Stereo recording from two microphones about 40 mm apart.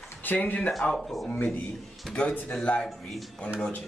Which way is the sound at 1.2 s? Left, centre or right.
Left.